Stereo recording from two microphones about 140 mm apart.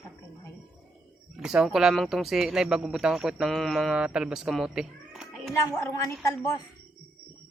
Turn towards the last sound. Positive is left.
turn(degrees=20)  # may be behind; listen again after turning